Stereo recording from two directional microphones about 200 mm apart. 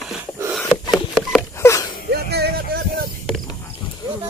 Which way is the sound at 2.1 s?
55° right (ahead or behind).